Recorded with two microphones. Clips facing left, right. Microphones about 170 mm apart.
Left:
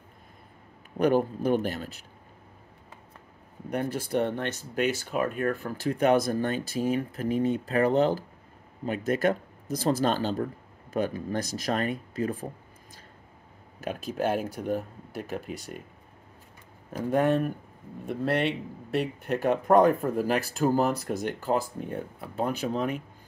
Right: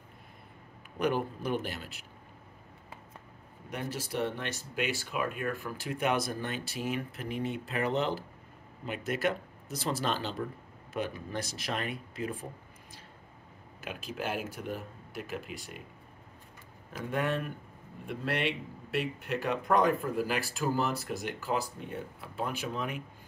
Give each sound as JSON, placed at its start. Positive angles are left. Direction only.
{"t": 0.9, "sound": "speech", "side_deg": 50}
{"t": 3.7, "sound": "speech", "side_deg": 55}
{"t": 13.8, "sound": "speech", "side_deg": 40}
{"t": 17.1, "sound": "speech", "side_deg": 40}
{"t": 18.9, "sound": "speech", "side_deg": 45}